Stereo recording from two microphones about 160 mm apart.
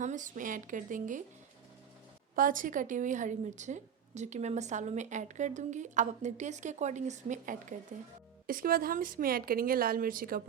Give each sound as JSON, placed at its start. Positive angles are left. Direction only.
{"t": 0.0, "sound": "speech", "side_deg": -50}
{"t": 2.3, "sound": "a woman's voice", "side_deg": -60}
{"t": 8.4, "sound": "speech", "side_deg": -65}